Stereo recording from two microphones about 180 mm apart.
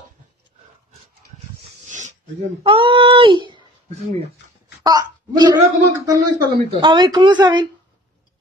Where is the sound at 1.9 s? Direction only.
45° right (ahead or behind).